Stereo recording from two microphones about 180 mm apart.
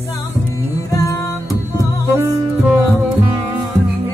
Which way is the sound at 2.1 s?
15° right (ahead or behind).